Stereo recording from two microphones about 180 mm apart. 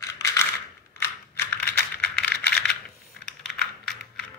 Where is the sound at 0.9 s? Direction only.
10° left (ahead or behind).